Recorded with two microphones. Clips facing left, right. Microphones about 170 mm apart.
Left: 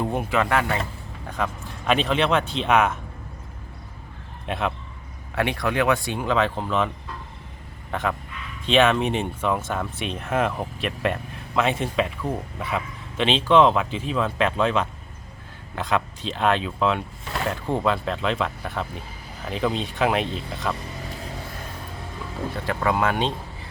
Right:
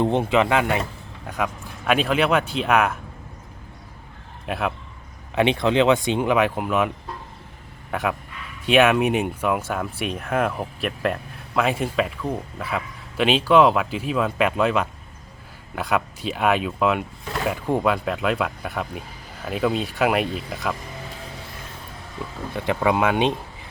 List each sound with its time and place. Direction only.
0.0 s speech: 25° right (ahead or behind)
1.9 s speech: 5° right (ahead or behind)
4.4 s a man's voice: 5° right (ahead or behind)
5.3 s speech: 20° right (ahead or behind)
22.5 s speech: 15° right (ahead or behind)